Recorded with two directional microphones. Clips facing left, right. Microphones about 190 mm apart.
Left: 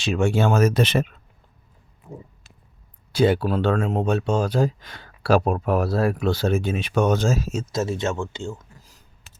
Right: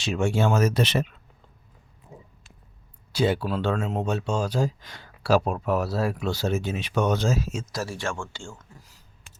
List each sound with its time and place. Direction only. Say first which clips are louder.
0.0 s speech: left 3 dB; 65° left (ahead or behind)
3.1 s speech: left 5 dB; 55° left (ahead or behind)
7.7 s speech: left 6 dB; 20° left (ahead or behind)